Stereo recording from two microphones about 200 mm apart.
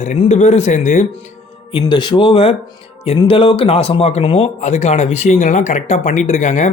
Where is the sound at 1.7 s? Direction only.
25° left (ahead or behind).